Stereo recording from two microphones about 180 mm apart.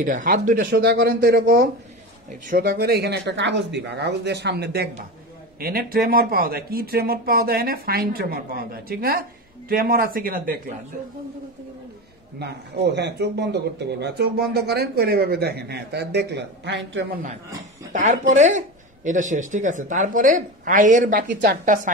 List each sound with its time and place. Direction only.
0.0 s a woman's voice: 50° right (ahead or behind)
0.7 s speech: 60° right (ahead or behind)
5.6 s a woman's voice: 55° right (ahead or behind)
12.4 s speech: 65° right (ahead or behind); by 17.2 s 80° right
17.9 s a woman's voice: 45° right (ahead or behind)
21.3 s speech: 65° right (ahead or behind)